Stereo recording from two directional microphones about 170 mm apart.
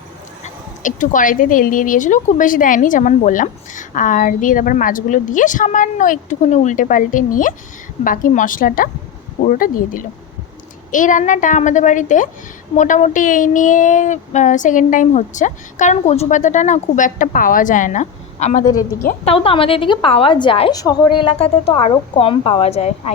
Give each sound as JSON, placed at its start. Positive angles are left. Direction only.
{"t": 0.4, "sound": "a woman's voice", "side_deg": 50}